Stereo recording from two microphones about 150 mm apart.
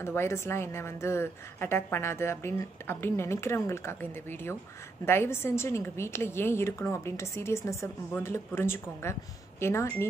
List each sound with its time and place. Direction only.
0.0 s a woman's voice: 15° left (ahead or behind)